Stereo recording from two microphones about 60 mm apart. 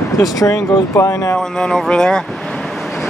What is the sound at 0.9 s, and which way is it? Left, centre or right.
Speech, left.